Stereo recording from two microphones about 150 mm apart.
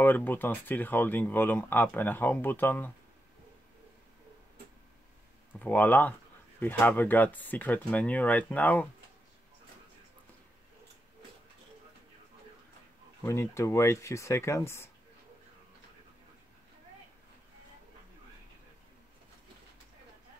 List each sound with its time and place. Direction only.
0.0 s speech: 15° left (ahead or behind)
5.5 s speech: 10° left (ahead or behind)
13.2 s speech: 20° left (ahead or behind)